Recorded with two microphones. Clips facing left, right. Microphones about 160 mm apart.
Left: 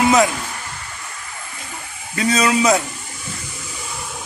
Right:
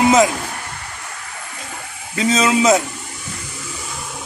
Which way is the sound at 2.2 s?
20° right (ahead or behind).